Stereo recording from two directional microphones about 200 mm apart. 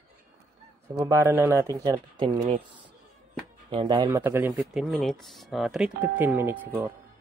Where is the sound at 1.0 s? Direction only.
15° right (ahead or behind).